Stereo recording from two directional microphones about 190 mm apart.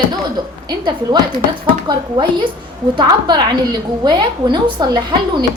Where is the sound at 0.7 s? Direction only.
25° right (ahead or behind).